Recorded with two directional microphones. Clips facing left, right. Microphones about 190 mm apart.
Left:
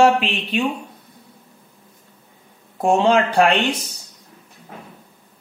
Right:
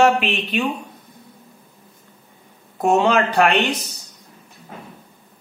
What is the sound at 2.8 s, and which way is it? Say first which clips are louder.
Speech: left 1 dB; 30° left (ahead or behind).